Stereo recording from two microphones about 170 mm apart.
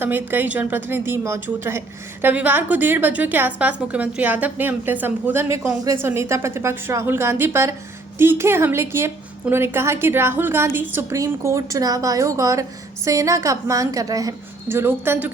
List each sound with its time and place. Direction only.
0.0 s a woman's voice: 10° right (ahead or behind)